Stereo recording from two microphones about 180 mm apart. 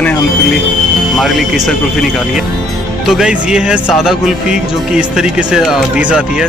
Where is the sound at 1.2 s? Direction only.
Centre (ahead or behind).